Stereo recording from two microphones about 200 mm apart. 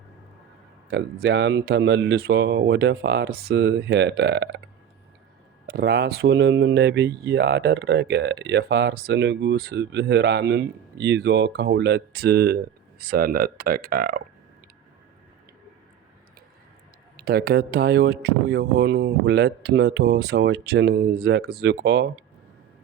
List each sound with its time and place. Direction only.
0.9 s speech: 55° right (ahead or behind)
5.6 s speech: 55° right (ahead or behind)
17.2 s speech: 50° right (ahead or behind)